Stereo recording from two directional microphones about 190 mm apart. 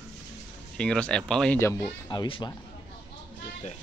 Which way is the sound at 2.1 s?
25° left (ahead or behind).